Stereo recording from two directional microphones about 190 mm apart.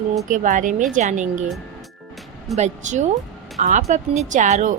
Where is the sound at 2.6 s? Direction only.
40° right (ahead or behind).